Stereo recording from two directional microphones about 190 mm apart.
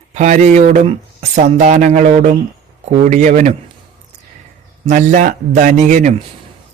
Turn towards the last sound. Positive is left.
turn(degrees=-40)  # may be behind; listen again after turning